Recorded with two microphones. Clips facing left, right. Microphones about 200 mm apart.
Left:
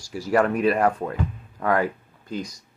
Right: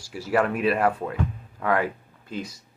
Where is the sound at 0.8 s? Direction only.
5° right (ahead or behind).